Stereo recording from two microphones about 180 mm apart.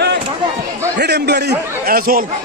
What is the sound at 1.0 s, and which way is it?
A man's voice, 65° right (ahead or behind).